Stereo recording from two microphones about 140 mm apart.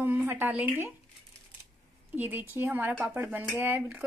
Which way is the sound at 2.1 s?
15° right (ahead or behind).